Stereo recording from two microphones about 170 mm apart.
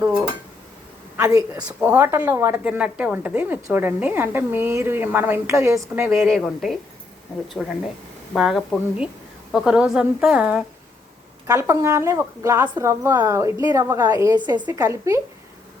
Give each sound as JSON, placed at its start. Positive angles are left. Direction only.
{"t": 1.1, "sound": "a sound", "side_deg": -15}
{"t": 1.5, "sound": "a woman's voice", "side_deg": -5}
{"t": 6.1, "sound": "speech", "side_deg": 0}
{"t": 11.4, "sound": "a woman's voice", "side_deg": -20}